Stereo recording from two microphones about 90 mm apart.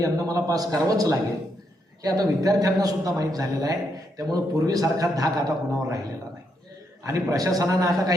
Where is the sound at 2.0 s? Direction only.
45° right (ahead or behind).